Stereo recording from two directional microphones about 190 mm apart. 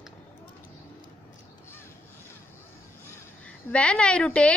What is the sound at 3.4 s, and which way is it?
A woman's voice, 5° left (ahead or behind).